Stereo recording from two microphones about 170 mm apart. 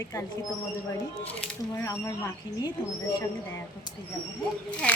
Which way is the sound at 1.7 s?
15° left (ahead or behind).